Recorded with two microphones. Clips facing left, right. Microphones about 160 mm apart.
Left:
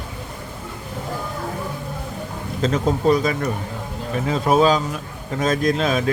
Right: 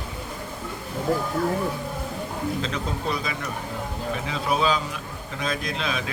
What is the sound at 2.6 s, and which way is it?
A man's voice, 45° left (ahead or behind).